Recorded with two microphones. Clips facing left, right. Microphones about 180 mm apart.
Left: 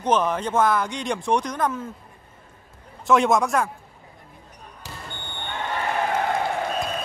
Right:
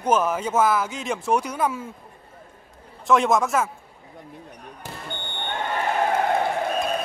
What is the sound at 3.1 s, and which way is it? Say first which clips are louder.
Speech: left 1 dB; centre (ahead or behind).